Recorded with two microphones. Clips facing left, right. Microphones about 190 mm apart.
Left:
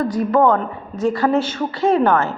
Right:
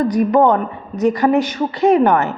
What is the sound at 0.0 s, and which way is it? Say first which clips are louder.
A woman's voice: right 3 dB; 20° right (ahead or behind).